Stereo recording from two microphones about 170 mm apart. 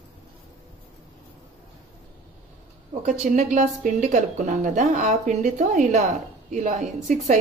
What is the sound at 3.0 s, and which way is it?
A woman's voice, 50° right (ahead or behind).